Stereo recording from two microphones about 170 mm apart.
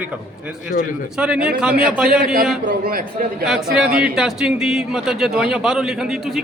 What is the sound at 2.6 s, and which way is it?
Speech, 60° right (ahead or behind).